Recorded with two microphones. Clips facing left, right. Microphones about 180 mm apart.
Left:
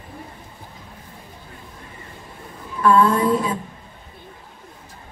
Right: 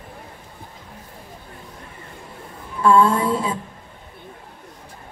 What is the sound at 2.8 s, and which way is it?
Speech, 30° right (ahead or behind).